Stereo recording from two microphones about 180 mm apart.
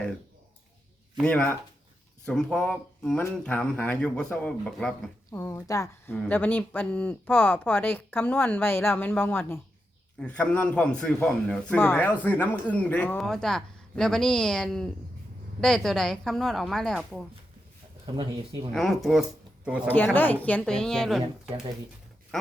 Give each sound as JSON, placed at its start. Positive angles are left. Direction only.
{"t": 1.1, "sound": "a man's voice", "side_deg": 5}
{"t": 5.3, "sound": "a man's voice", "side_deg": 15}
{"t": 18.7, "sound": "a man's voice", "side_deg": 0}
{"t": 20.1, "sound": "a man's voice", "side_deg": 10}